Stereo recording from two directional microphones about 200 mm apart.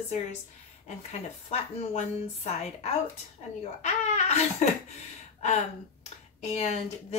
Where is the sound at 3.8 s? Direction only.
35° left (ahead or behind).